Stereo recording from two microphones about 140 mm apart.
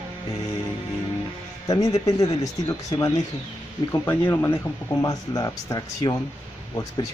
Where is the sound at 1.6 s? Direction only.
25° left (ahead or behind).